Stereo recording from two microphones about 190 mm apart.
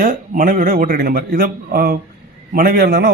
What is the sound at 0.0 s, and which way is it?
A man's voice, 50° right (ahead or behind).